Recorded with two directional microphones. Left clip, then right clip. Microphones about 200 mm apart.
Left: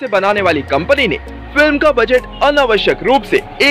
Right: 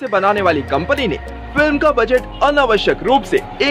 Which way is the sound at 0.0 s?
5° left (ahead or behind).